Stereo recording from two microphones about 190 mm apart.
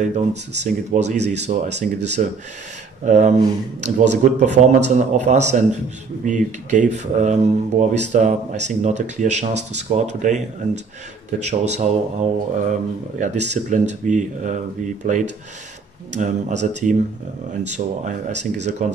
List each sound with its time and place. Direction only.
0.0 s speech: 35° right (ahead or behind)